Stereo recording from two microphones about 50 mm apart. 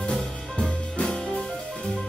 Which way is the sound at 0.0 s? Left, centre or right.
Left.